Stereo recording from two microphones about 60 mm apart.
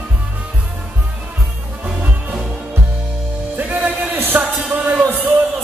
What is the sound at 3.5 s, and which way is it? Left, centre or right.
Music, right.